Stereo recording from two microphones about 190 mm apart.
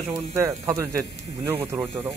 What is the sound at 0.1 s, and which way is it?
Speech, 15° right (ahead or behind).